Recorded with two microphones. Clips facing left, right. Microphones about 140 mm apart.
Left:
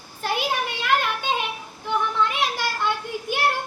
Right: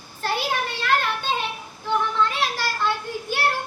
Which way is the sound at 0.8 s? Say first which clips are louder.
Even; 15° left (ahead or behind).